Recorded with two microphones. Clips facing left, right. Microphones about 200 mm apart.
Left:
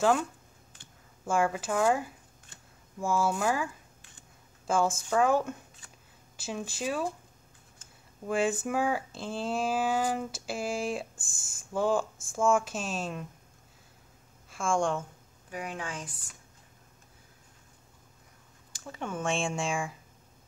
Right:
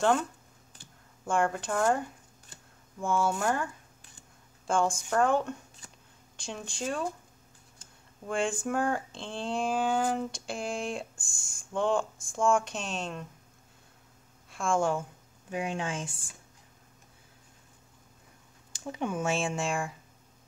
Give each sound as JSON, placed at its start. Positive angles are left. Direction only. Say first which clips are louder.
{"t": 1.2, "sound": "speech", "louder": "even", "side_deg": 5}
{"t": 8.3, "sound": "speech", "louder": "left 2 dB", "side_deg": 5}
{"t": 14.5, "sound": "a woman's voice", "louder": "right 1 dB", "side_deg": 0}
{"t": 15.5, "sound": "speech", "louder": "right 4 dB", "side_deg": -25}
{"t": 18.7, "sound": "speech", "louder": "right 4 dB", "side_deg": -15}